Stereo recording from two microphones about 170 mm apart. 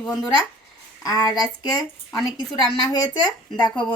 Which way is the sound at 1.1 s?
25° left (ahead or behind).